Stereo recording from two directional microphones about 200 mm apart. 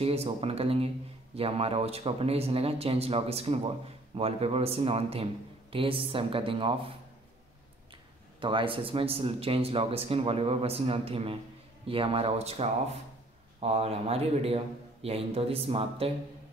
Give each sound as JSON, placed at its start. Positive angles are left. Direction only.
{"t": 0.0, "sound": "speech", "side_deg": -30}
{"t": 8.4, "sound": "speech", "side_deg": -25}